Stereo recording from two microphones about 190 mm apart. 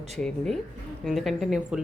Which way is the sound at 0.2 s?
5° left (ahead or behind).